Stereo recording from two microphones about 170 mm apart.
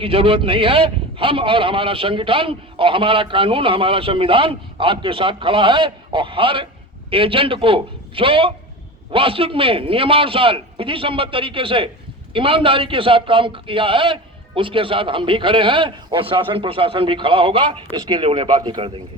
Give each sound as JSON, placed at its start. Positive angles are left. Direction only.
{"t": 0.0, "sound": "a man's voice", "side_deg": -30}